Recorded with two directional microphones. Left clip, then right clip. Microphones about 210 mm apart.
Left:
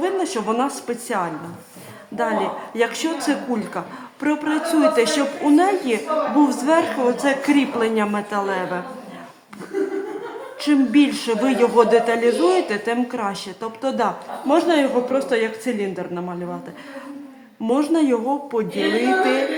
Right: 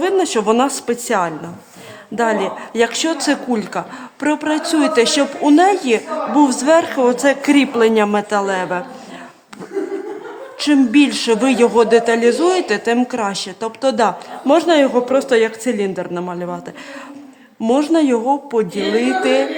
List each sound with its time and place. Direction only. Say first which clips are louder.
0.0 s speech: right 6 dB; 45° right (ahead or behind)
10.6 s speech: right 4 dB; 40° right (ahead or behind)
17.6 s speech: right 4 dB; 40° right (ahead or behind)